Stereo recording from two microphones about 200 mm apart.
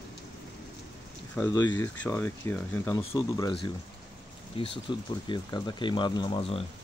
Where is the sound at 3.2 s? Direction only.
20° left (ahead or behind).